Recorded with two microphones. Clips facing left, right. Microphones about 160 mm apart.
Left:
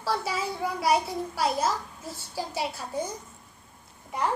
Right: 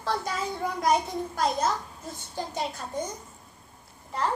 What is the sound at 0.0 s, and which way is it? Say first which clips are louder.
A child's voice: left 1 dB; 5° left (ahead or behind).